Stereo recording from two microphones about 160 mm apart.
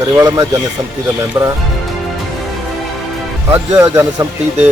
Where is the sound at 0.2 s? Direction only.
25° right (ahead or behind).